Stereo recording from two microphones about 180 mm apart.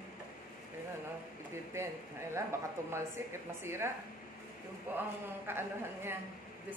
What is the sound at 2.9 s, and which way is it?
A woman's voice, 15° right (ahead or behind).